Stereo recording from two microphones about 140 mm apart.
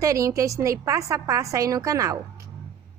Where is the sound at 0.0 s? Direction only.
25° right (ahead or behind).